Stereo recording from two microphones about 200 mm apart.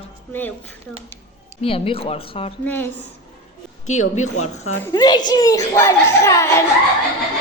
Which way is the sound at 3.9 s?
35° left (ahead or behind).